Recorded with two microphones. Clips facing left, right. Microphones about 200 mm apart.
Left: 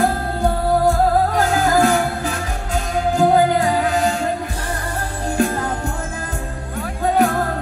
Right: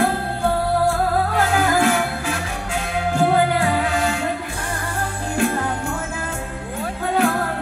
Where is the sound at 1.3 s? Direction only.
40° left (ahead or behind).